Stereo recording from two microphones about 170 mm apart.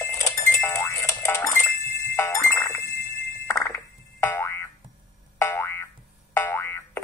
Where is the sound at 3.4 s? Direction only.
15° left (ahead or behind).